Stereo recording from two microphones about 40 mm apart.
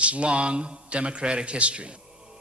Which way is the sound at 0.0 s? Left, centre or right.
Right.